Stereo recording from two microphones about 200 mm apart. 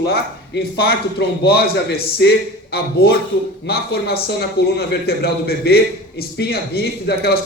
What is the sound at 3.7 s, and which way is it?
A man's voice, 50° left (ahead or behind).